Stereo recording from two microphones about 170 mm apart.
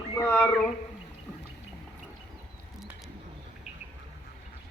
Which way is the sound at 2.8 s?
Centre (ahead or behind).